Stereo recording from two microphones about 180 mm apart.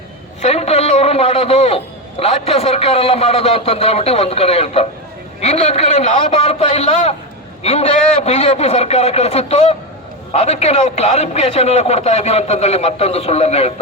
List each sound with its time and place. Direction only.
0.4 s a man's voice: 35° left (ahead or behind)